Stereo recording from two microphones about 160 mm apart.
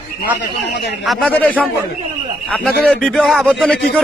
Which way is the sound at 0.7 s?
90° left.